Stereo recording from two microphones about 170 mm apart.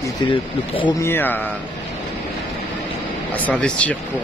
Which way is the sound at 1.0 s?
10° left (ahead or behind).